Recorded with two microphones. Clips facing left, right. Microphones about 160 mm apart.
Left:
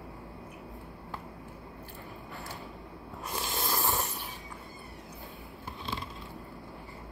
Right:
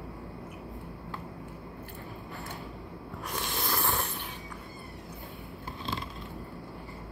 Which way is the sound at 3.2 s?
25° left (ahead or behind).